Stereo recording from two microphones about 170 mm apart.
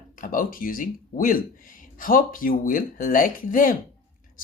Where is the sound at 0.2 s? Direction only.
55° left (ahead or behind).